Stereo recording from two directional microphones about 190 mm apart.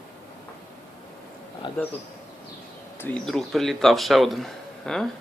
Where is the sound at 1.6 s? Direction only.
25° left (ahead or behind).